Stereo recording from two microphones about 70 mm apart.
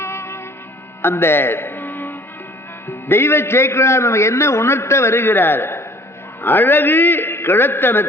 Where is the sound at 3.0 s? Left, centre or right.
Left.